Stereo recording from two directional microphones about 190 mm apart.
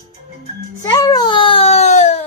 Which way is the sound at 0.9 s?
20° left (ahead or behind).